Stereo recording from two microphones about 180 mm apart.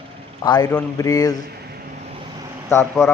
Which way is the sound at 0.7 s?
15° left (ahead or behind).